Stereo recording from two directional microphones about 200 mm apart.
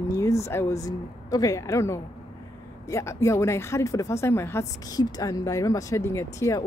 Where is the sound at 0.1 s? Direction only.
15° left (ahead or behind).